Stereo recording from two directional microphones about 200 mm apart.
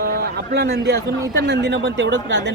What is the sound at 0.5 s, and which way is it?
Speech, 55° right (ahead or behind).